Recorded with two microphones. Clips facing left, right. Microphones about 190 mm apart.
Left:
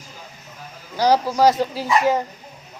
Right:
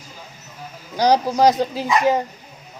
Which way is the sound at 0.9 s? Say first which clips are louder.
Right 1 dB; 15° right (ahead or behind).